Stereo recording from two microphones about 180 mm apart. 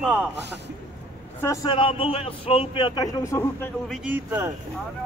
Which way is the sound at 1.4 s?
20° left (ahead or behind).